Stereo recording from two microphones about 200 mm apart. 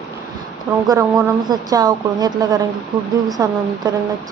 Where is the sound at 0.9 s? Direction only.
20° right (ahead or behind).